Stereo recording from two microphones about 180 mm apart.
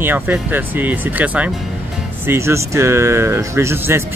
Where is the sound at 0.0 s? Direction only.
10° right (ahead or behind).